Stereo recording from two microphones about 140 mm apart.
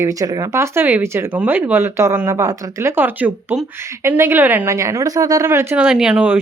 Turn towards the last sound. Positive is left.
turn(degrees=-10)  # may be behind; listen again after turning